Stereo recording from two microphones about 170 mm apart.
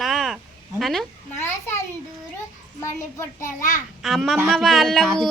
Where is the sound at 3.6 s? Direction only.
50° left (ahead or behind).